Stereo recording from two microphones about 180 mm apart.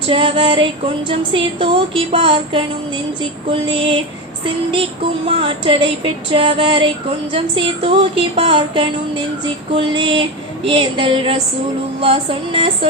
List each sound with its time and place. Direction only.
0.1 s speech: 30° right (ahead or behind)
5.2 s speech: 30° right (ahead or behind)